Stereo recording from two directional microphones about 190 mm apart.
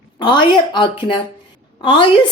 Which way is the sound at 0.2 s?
25° left (ahead or behind).